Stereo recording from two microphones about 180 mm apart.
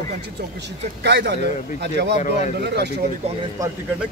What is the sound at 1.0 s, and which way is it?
Speech, 70° right (ahead or behind).